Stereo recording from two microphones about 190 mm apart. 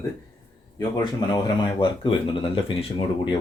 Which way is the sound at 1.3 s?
25° left (ahead or behind).